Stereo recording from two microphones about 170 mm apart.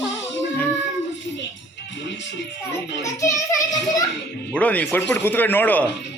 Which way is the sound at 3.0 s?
20° left (ahead or behind).